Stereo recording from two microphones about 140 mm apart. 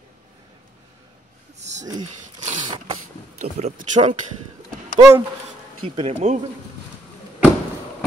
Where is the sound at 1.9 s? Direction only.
60° right (ahead or behind).